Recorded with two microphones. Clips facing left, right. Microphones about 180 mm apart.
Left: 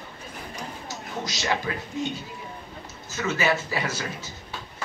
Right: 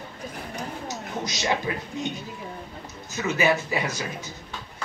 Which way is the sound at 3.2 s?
15° right (ahead or behind).